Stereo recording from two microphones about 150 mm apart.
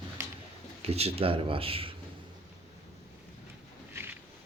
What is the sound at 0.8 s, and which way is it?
Speech, 40° right (ahead or behind).